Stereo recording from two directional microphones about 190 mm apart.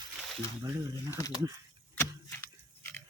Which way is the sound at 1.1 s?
20° left (ahead or behind).